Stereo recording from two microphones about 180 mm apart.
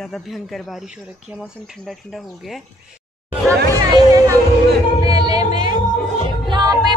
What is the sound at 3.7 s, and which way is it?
Music, 20° right (ahead or behind).